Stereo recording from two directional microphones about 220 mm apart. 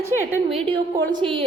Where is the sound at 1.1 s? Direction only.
20° right (ahead or behind).